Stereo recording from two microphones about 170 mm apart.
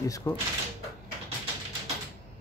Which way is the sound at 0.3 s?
25° left (ahead or behind).